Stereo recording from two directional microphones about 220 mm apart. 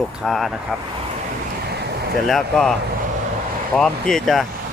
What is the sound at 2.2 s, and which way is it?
Speech, centre (ahead or behind).